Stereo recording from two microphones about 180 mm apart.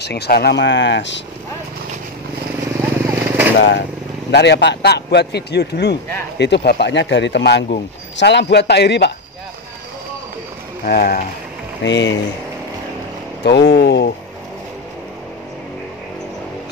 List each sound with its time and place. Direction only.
0.0 s a man's voice: 65° left (ahead or behind); by 1.2 s 80° left
3.1 s a sound: 10° right (ahead or behind)
3.5 s a man's voice: 75° left (ahead or behind)
10.9 s speech: 55° left (ahead or behind)
11.8 s speech: 85° left
13.4 s a man's voice: 70° left (ahead or behind)